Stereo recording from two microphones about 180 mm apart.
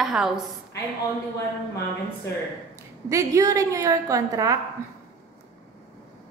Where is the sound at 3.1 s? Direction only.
20° right (ahead or behind).